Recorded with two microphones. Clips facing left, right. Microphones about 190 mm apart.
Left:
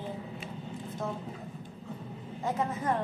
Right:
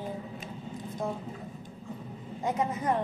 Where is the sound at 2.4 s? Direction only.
15° right (ahead or behind).